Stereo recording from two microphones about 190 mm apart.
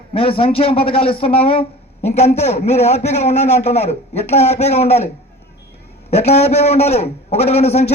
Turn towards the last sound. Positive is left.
turn(degrees=35)  # may be behind; listen again after turning